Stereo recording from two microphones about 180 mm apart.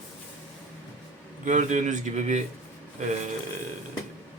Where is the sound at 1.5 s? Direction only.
40° right (ahead or behind).